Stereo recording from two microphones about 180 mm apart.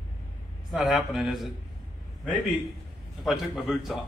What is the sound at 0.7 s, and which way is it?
Speech, centre (ahead or behind).